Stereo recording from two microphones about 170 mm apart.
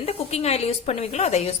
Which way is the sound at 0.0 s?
35° left (ahead or behind).